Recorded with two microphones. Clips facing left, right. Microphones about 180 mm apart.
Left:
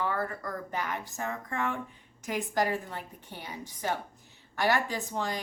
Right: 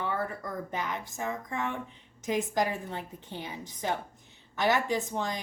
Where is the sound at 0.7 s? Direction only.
20° right (ahead or behind).